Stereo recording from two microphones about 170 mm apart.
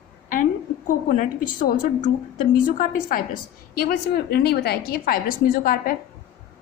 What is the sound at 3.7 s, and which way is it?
A woman's voice, 65° left (ahead or behind).